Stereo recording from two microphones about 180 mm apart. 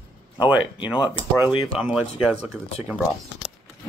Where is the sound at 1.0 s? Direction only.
25° left (ahead or behind).